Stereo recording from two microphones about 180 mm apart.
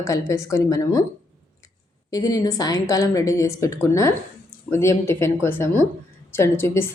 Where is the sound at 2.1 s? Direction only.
20° left (ahead or behind).